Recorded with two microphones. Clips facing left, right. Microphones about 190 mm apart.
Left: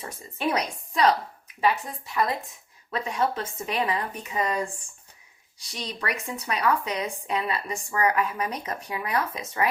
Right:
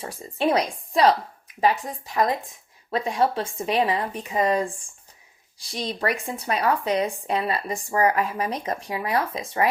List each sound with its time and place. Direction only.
0.0 s a woman's voice: 30° right (ahead or behind)